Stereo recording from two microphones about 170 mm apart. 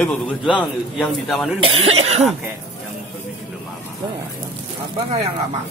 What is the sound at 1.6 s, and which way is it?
Speech, 35° right (ahead or behind).